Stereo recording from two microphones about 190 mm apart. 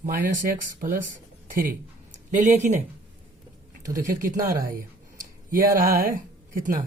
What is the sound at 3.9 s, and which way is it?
Speech, 45° right (ahead or behind).